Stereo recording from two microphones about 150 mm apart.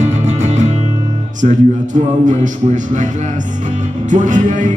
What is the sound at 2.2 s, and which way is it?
Music, 55° right (ahead or behind).